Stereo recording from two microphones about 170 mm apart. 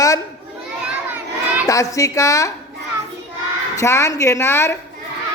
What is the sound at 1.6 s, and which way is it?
Speech, 20° left (ahead or behind).